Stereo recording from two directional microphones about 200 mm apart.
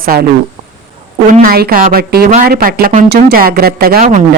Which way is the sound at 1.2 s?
40° right (ahead or behind).